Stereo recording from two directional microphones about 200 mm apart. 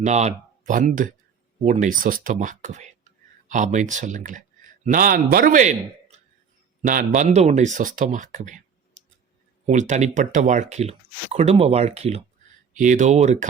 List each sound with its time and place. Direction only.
0.0 s speech: 35° right (ahead or behind)
9.6 s speech: 35° right (ahead or behind)